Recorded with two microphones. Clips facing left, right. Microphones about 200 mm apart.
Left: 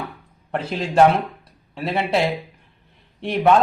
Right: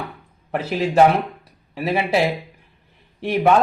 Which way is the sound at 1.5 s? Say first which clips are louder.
Right 3 dB; 5° right (ahead or behind).